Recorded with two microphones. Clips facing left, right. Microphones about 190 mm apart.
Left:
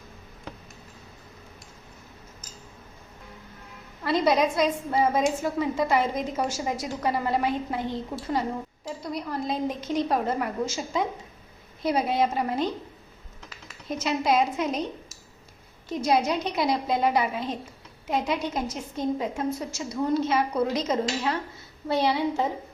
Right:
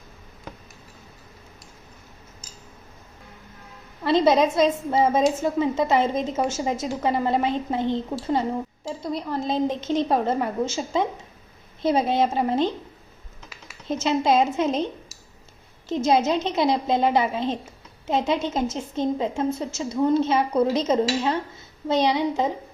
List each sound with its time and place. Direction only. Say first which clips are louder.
4.0 s a woman's voice: right 4 dB; 25° right (ahead or behind)
13.8 s a woman's voice: right 4 dB; 25° right (ahead or behind)
15.9 s a woman's voice: right 3 dB; 25° right (ahead or behind)